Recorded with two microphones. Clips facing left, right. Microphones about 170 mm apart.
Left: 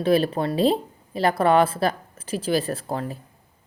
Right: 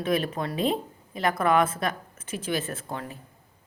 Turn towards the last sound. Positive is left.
turn(degrees=35)  # may be behind; listen again after turning